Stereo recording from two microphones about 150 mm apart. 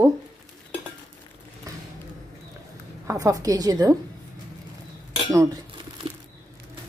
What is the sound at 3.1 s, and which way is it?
Speech, 20° right (ahead or behind).